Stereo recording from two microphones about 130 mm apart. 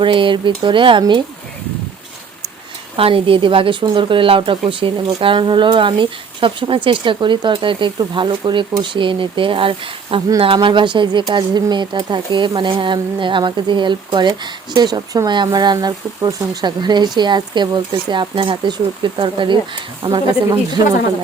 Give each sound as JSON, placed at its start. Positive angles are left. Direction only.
{"t": 0.0, "sound": "speech", "side_deg": -40}
{"t": 2.9, "sound": "a woman's voice", "side_deg": -45}